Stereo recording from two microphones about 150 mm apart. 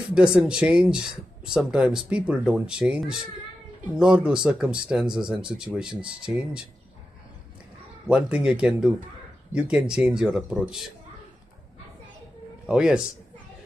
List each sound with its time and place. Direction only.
0.1 s speech: 5° right (ahead or behind)
8.1 s speech: 5° right (ahead or behind)
12.6 s speech: 5° right (ahead or behind)